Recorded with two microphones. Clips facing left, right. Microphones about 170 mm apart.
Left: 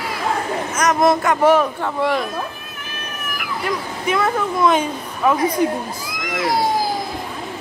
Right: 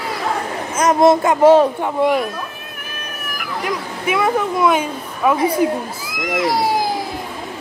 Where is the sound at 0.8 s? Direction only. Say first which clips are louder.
Right 4 dB; 25° right (ahead or behind).